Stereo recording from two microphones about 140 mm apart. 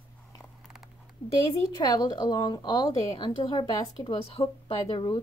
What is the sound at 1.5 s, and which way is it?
A woman's voice, 30° left (ahead or behind).